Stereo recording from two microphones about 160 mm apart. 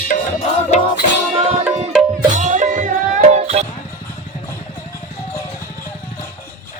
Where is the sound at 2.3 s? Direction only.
50° right (ahead or behind).